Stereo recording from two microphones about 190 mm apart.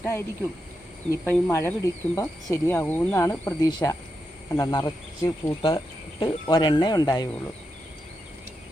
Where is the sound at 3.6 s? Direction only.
20° left (ahead or behind).